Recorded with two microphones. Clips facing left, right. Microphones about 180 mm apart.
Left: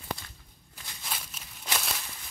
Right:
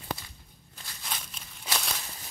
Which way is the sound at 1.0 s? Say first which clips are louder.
Even; 5° left (ahead or behind).